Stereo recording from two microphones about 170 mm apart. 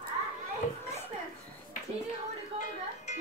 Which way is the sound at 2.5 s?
35° right (ahead or behind).